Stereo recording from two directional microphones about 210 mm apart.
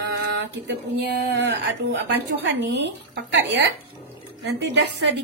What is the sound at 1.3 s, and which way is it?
A woman's voice, 60° right (ahead or behind).